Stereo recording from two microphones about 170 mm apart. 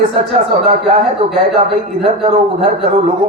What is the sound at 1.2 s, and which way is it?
A man's voice, 35° right (ahead or behind).